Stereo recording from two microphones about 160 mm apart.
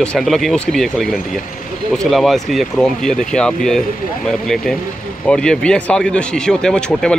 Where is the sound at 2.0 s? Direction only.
Centre (ahead or behind).